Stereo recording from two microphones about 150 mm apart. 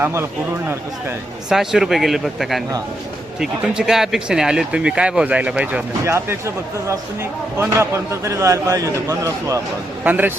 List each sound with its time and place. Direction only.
0.0 s a man's voice: 15° right (ahead or behind)
1.5 s speech: 5° right (ahead or behind)
6.1 s a man's voice: 20° right (ahead or behind)
10.0 s a man's voice: 10° right (ahead or behind)